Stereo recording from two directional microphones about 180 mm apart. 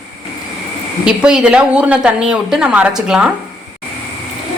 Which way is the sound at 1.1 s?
5° right (ahead or behind).